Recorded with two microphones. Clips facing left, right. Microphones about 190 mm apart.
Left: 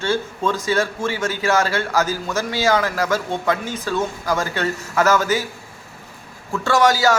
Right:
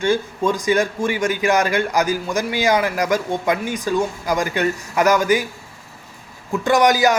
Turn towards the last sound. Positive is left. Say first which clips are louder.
# right 1 dB
turn(degrees=-15)  # may be behind; listen again after turning